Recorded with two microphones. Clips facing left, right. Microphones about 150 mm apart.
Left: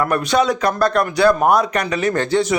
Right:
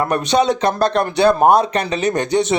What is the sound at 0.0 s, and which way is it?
Speech, 20° right (ahead or behind).